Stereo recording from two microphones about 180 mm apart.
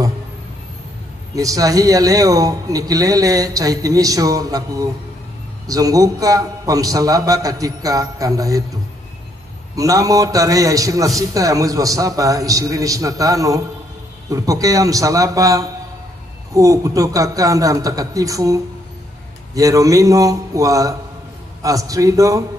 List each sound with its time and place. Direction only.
1.3 s a man's voice: 20° right (ahead or behind)
9.8 s a man's voice: 20° right (ahead or behind)